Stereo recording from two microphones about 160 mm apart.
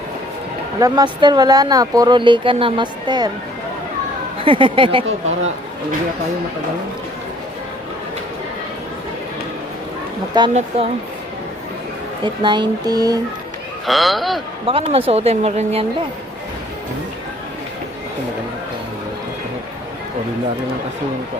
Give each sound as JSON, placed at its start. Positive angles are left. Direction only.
{"t": 0.8, "sound": "speech", "side_deg": -25}
{"t": 4.4, "sound": "speech", "side_deg": -35}
{"t": 10.3, "sound": "speech", "side_deg": -25}
{"t": 12.2, "sound": "speech", "side_deg": -30}
{"t": 13.8, "sound": "a man's voice", "side_deg": 0}
{"t": 14.7, "sound": "speech", "side_deg": -35}